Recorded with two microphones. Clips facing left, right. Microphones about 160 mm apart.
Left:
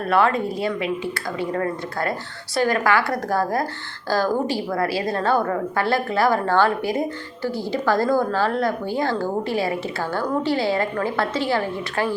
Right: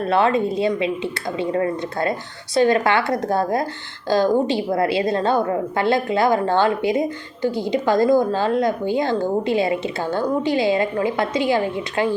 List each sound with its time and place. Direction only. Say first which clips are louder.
0.0 s a woman's voice: right 2 dB; 25° right (ahead or behind)